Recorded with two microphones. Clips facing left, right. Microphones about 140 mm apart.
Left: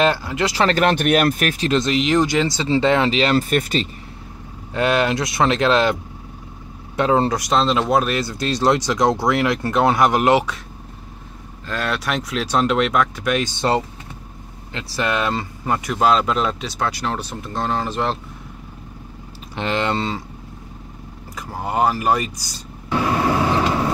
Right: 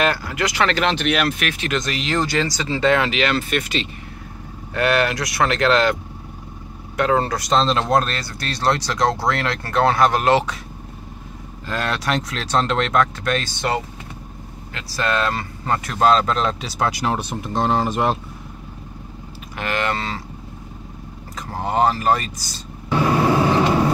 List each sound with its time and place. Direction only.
0.0 s speech: 25° left (ahead or behind)
0.8 s speech: 50° left (ahead or behind)
4.7 s speech: 20° left (ahead or behind)
7.0 s speech: 20° left (ahead or behind)
11.6 s speech: centre (ahead or behind)
13.6 s speech: 30° left (ahead or behind)
14.7 s speech: 20° left (ahead or behind)
16.6 s speech: 10° right (ahead or behind)
19.5 s speech: 25° left (ahead or behind)
21.4 s speech: 5° left (ahead or behind)